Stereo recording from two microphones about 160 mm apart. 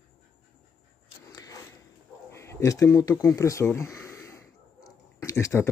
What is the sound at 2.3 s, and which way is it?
Speech, 15° left (ahead or behind).